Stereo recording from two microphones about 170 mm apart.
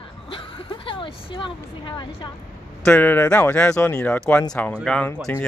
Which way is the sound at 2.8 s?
10° left (ahead or behind).